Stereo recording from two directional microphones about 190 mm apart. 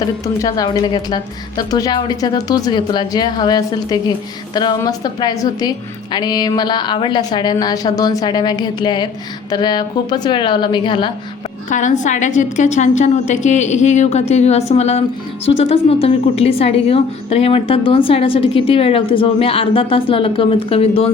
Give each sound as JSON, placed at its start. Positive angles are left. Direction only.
{"t": 0.0, "sound": "a woman's voice", "side_deg": 20}
{"t": 11.7, "sound": "a woman's voice", "side_deg": 40}